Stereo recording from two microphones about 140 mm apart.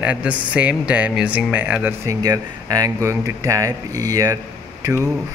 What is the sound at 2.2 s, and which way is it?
Speech, 25° right (ahead or behind).